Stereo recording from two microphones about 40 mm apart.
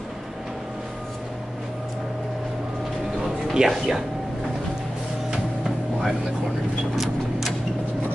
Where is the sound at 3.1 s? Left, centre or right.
Centre.